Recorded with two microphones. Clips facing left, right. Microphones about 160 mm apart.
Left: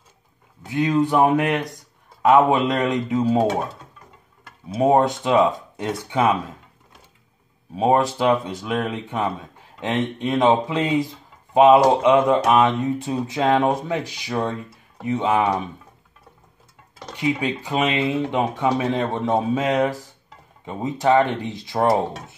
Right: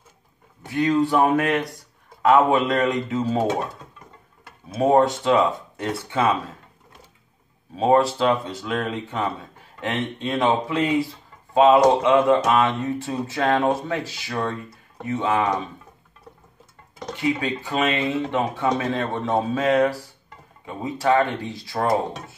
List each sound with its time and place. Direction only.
0.7 s speech: 15° left (ahead or behind)
4.7 s speech: 15° left (ahead or behind)
7.7 s a man's voice: 15° left (ahead or behind)
17.1 s a man's voice: 15° left (ahead or behind)